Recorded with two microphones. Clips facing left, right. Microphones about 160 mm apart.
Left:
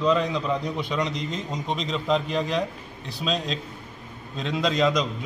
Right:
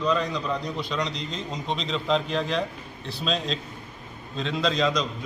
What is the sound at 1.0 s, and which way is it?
Speech, 50° left (ahead or behind).